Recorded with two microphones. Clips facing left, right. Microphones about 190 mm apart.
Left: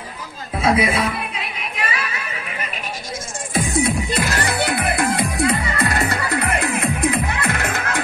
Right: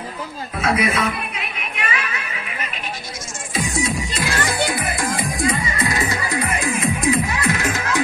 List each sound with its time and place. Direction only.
0.6 s a woman's voice: 30° left (ahead or behind)
3.5 s music: 55° left (ahead or behind)